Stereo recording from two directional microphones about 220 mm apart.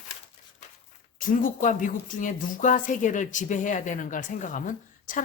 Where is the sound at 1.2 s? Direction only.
35° left (ahead or behind).